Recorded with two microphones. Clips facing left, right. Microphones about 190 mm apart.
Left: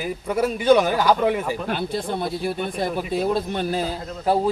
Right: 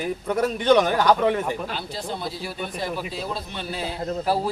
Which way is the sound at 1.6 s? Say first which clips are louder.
Left 6 dB; 55° left (ahead or behind).